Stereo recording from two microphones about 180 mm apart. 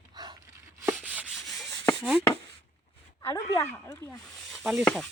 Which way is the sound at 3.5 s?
15° left (ahead or behind).